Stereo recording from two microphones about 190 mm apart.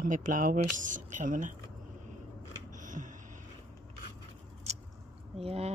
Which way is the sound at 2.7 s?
40° right (ahead or behind).